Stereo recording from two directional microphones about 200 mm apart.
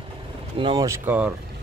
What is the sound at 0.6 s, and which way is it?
Speech, 20° right (ahead or behind).